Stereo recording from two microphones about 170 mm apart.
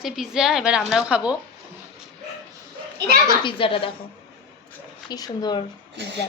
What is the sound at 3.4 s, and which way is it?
Speech, 30° left (ahead or behind).